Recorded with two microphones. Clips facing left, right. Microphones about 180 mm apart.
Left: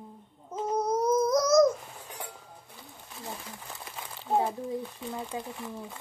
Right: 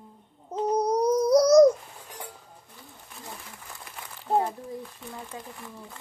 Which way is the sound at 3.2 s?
20° left (ahead or behind).